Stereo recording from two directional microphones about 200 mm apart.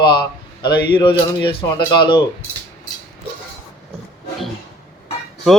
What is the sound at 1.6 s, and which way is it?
Speech, 20° left (ahead or behind).